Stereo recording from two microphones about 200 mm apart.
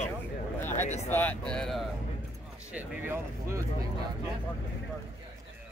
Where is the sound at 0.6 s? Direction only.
10° left (ahead or behind).